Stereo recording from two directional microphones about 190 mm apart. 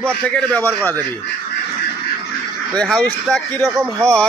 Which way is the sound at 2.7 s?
5° left (ahead or behind).